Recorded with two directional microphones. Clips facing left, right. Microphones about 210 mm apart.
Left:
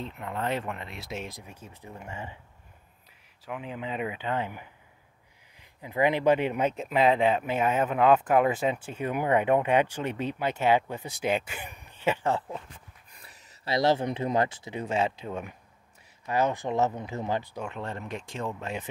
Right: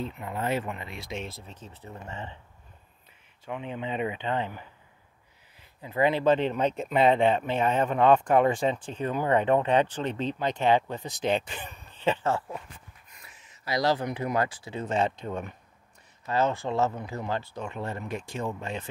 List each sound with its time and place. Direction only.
0.0 s speech: 5° right (ahead or behind); by 2.3 s 10° left (ahead or behind)
3.4 s speech: 5° left (ahead or behind)
13.1 s a sound: 35° left (ahead or behind)
13.7 s speech: 25° left (ahead or behind)
17.6 s speech: 5° right (ahead or behind)